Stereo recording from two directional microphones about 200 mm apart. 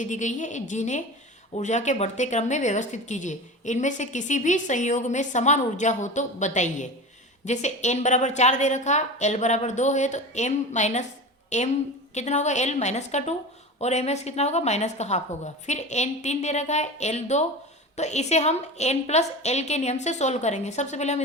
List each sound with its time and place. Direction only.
0.0 s a woman's voice: 40° left (ahead or behind)